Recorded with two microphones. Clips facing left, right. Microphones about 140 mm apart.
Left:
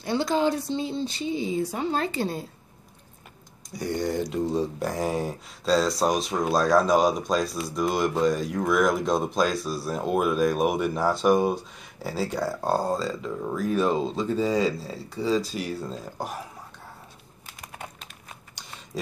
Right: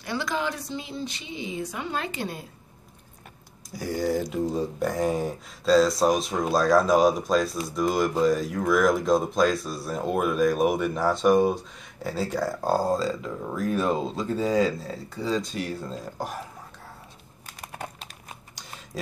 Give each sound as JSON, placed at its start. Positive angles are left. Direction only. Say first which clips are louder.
{"t": 0.0, "sound": "a woman's voice", "louder": "left 5 dB", "side_deg": 30}
{"t": 3.7, "sound": "speech", "louder": "right 1 dB", "side_deg": -5}
{"t": 17.6, "sound": "typing", "louder": "right 3 dB", "side_deg": -35}